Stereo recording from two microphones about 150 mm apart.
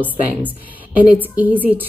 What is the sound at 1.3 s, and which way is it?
Speech, 10° right (ahead or behind).